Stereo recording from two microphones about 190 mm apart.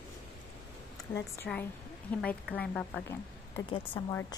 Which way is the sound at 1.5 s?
Centre (ahead or behind).